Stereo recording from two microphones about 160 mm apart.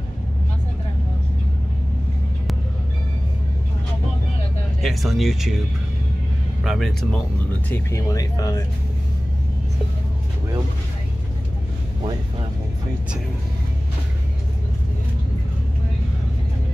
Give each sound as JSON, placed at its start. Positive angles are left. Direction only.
{"t": 4.8, "sound": "speech", "side_deg": 0}
{"t": 6.6, "sound": "speech", "side_deg": 0}
{"t": 7.7, "sound": "speech", "side_deg": 20}